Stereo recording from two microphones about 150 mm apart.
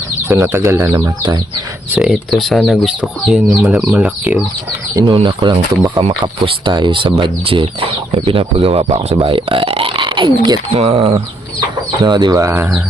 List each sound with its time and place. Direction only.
0.5 s speech: 20° right (ahead or behind)
2.0 s speech: centre (ahead or behind)
5.1 s speech: 30° right (ahead or behind)
10.8 s speech: 40° right (ahead or behind)
12.0 s speech: 30° right (ahead or behind)